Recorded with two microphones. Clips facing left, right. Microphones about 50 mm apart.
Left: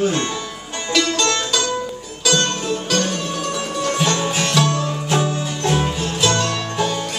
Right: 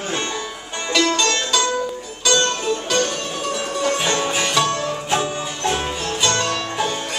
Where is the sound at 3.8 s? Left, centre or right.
Centre.